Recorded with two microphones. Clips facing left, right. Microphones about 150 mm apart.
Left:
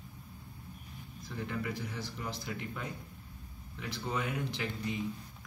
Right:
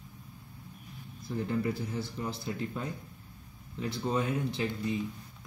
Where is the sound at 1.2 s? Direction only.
30° right (ahead or behind).